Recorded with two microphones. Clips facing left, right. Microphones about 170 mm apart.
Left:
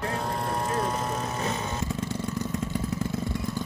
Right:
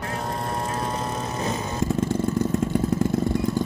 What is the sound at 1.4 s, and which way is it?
Vehicle, 40° right (ahead or behind).